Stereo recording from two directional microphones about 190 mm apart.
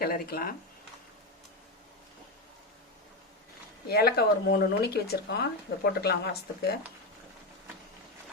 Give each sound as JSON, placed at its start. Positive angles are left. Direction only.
{"t": 0.0, "sound": "speech", "side_deg": 50}
{"t": 3.8, "sound": "speech", "side_deg": 55}